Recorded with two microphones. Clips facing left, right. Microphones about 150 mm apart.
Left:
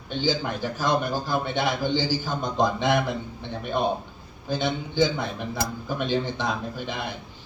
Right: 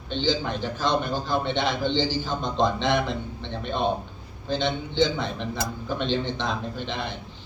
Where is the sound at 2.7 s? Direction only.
10° left (ahead or behind).